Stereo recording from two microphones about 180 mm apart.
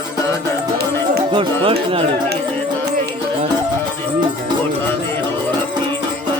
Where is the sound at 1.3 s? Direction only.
30° right (ahead or behind).